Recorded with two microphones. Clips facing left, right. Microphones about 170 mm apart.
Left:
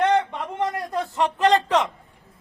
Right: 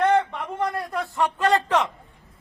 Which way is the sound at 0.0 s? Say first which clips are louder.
Even; 15° left (ahead or behind).